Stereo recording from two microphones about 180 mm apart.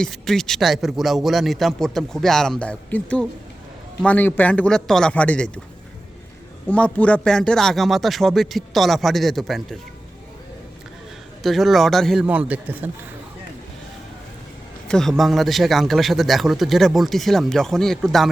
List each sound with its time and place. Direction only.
0.0 s a man's voice: 5° left (ahead or behind)
6.7 s speech: 10° left (ahead or behind)
11.4 s speech: centre (ahead or behind)
14.8 s speech: centre (ahead or behind)